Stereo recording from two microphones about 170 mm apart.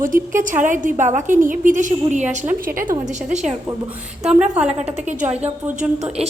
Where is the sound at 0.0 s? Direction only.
50° right (ahead or behind).